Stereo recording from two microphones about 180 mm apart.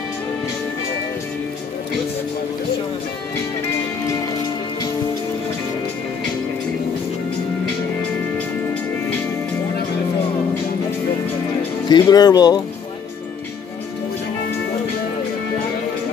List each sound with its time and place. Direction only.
11.9 s speech: 20° left (ahead or behind)